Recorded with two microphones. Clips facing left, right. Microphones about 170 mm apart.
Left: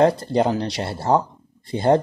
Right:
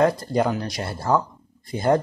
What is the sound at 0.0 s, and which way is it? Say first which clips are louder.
Speech: left 3 dB; 25° left (ahead or behind).